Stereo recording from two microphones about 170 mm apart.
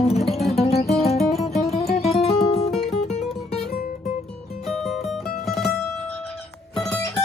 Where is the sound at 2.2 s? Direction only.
40° left (ahead or behind).